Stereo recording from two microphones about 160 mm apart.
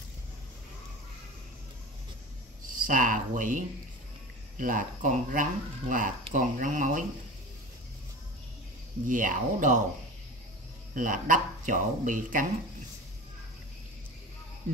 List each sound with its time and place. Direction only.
2.6 s speech: 55° right (ahead or behind)
9.0 s speech: 55° right (ahead or behind)
11.0 s speech: 55° right (ahead or behind)